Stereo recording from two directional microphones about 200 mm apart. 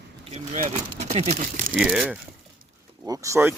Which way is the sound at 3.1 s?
15° right (ahead or behind).